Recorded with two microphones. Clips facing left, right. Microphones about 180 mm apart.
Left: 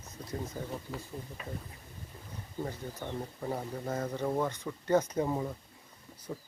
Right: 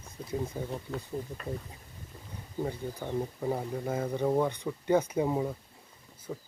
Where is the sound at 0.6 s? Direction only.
20° right (ahead or behind).